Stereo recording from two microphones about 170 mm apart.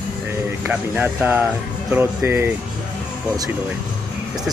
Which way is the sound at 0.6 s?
10° right (ahead or behind).